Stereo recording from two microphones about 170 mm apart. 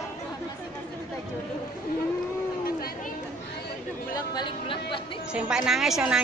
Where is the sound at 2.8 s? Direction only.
60° left (ahead or behind).